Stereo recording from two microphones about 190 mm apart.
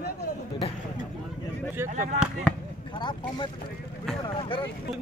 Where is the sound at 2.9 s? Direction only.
25° left (ahead or behind).